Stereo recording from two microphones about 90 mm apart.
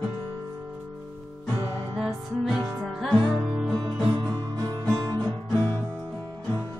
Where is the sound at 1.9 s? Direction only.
Centre (ahead or behind).